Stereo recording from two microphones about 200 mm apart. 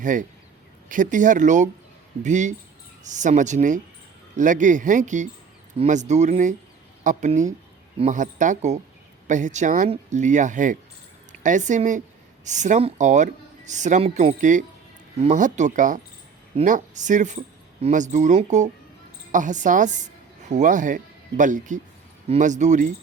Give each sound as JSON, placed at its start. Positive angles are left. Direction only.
{"t": 0.0, "sound": "a woman's voice", "side_deg": -40}